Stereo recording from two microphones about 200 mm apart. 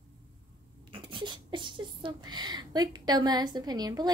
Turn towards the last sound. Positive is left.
turn(degrees=-20)  # may be behind; listen again after turning